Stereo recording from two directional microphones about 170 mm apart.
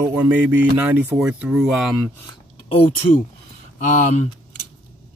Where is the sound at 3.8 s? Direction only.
45° left (ahead or behind).